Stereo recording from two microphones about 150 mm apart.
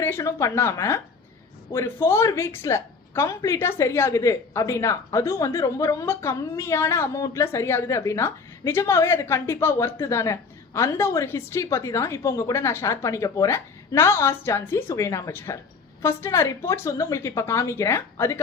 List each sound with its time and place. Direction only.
0.0 s a woman's voice: 15° left (ahead or behind)